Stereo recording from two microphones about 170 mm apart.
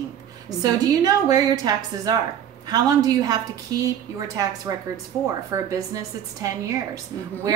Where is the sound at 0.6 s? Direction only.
20° right (ahead or behind).